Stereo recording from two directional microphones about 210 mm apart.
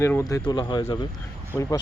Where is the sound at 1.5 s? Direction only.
10° right (ahead or behind).